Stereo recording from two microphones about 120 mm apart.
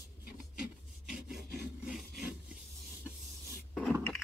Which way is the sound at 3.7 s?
Centre (ahead or behind).